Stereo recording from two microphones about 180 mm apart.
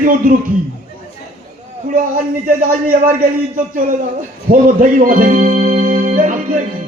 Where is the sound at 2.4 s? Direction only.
50° right (ahead or behind).